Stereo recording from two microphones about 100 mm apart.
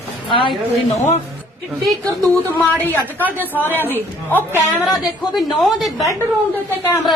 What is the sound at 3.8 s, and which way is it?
Speech, 20° left (ahead or behind).